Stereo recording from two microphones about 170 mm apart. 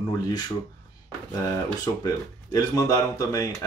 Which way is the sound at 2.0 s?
20° left (ahead or behind).